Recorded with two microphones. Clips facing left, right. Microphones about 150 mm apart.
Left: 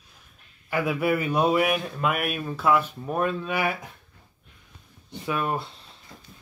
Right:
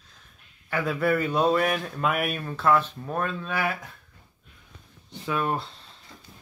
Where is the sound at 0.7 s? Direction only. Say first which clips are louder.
Even; 10° left (ahead or behind).